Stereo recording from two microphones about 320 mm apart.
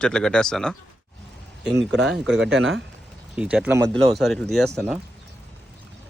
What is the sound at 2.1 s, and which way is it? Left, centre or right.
Speech, centre.